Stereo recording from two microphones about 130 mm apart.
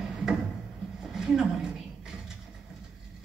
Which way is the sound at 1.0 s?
5° right (ahead or behind).